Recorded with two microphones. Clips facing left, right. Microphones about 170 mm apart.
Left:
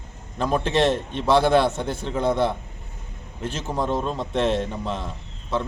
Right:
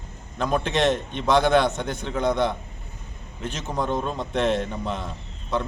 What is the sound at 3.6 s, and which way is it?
A man's voice, 5° left (ahead or behind).